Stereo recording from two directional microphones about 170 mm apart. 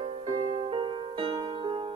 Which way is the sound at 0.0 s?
35° right (ahead or behind).